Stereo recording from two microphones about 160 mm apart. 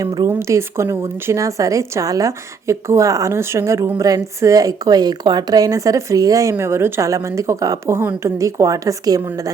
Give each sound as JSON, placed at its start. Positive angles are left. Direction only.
{"t": 0.3, "sound": "a woman's voice", "side_deg": -15}